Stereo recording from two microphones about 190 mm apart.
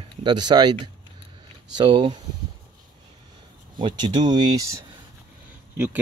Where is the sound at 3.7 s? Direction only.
25° right (ahead or behind).